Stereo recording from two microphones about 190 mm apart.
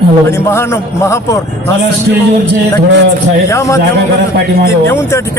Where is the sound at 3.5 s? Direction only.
15° left (ahead or behind).